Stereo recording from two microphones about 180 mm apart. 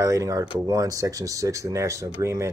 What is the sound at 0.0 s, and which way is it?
Speech, 20° right (ahead or behind).